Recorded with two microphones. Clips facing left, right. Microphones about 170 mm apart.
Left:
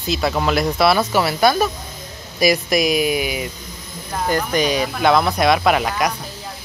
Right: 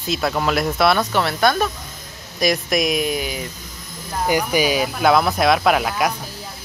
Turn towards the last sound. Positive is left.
turn(degrees=0)  # may be behind; listen again after turning